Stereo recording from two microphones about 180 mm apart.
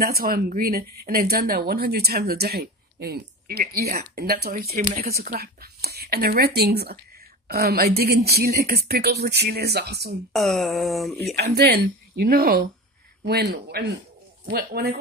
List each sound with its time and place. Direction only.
0.0 s a woman's voice: 55° right (ahead or behind)
10.3 s a sound: centre (ahead or behind)
11.3 s a woman's voice: 65° right (ahead or behind)